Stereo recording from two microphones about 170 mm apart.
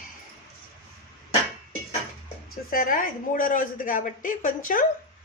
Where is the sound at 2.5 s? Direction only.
55° left (ahead or behind).